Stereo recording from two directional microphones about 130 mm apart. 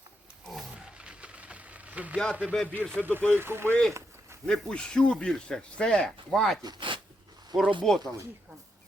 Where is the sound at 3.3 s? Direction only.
15° right (ahead or behind).